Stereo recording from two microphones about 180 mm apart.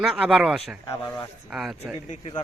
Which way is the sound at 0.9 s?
15° left (ahead or behind).